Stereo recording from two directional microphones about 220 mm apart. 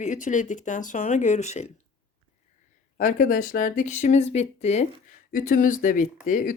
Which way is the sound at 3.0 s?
35° left (ahead or behind).